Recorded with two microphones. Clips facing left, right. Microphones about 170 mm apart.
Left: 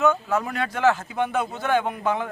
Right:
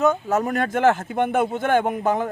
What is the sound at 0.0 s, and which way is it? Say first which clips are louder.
A man's voice: right 2 dB; 40° right (ahead or behind).